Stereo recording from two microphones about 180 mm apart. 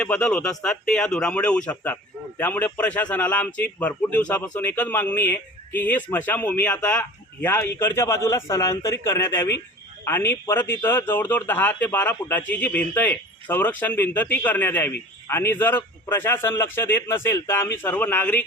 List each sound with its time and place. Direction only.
0.0 s speech: 5° left (ahead or behind)